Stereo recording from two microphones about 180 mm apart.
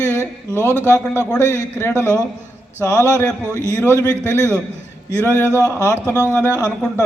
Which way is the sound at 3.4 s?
15° right (ahead or behind).